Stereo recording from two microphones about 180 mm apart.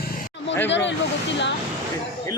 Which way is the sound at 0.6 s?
80° left.